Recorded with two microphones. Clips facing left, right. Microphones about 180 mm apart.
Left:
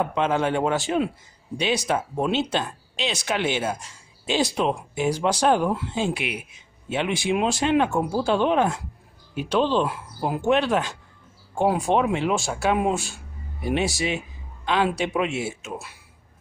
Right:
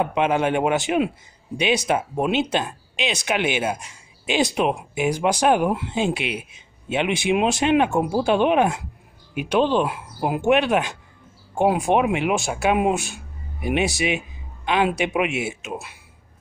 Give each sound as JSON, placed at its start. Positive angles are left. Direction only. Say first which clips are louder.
{"t": 0.0, "sound": "speech", "louder": "right 2 dB", "side_deg": -15}